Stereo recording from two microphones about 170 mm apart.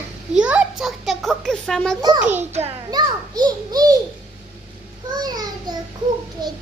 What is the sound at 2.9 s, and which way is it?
A child's voice, 25° right (ahead or behind).